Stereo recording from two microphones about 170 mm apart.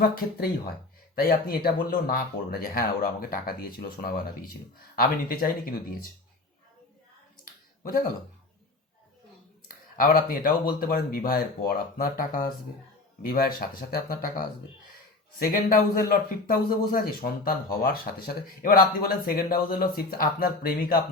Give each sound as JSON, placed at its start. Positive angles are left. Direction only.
{"t": 0.0, "sound": "a man's voice", "side_deg": 65}
{"t": 7.9, "sound": "a man's voice", "side_deg": 55}
{"t": 10.0, "sound": "a man's voice", "side_deg": 60}